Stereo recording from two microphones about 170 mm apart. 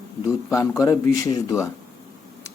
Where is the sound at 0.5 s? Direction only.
20° left (ahead or behind).